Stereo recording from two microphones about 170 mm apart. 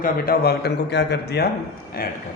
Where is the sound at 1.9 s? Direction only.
60° left (ahead or behind).